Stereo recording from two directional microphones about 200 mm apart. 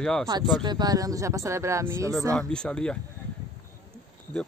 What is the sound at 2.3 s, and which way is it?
Speech, 5° left (ahead or behind).